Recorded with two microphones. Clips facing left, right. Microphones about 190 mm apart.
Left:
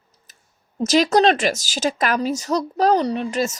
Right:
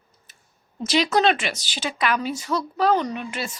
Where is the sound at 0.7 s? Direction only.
45° left (ahead or behind).